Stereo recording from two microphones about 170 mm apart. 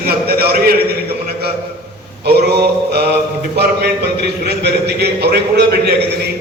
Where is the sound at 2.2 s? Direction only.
70° right (ahead or behind).